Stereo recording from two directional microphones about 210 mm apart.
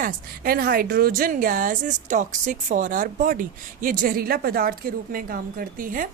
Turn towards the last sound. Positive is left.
turn(degrees=-40)  # may be behind; listen again after turning